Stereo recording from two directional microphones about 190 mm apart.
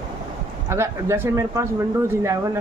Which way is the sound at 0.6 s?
15° right (ahead or behind).